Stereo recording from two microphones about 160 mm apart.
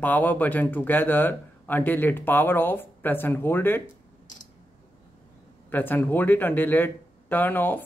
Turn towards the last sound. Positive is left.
turn(degrees=10)  # may be behind; listen again after turning